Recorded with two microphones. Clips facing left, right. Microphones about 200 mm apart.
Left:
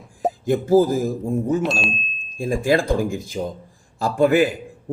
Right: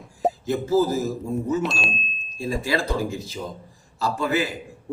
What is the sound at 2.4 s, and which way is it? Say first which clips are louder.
A man's voice: left 6 dB; 50° left (ahead or behind).